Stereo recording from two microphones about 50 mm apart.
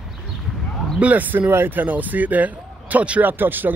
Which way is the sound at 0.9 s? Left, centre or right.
Right.